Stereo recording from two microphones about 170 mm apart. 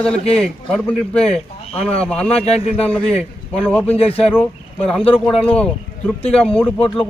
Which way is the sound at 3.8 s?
35° left (ahead or behind).